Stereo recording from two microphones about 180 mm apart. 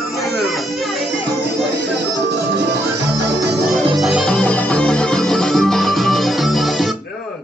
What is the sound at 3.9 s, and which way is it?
Music, centre (ahead or behind).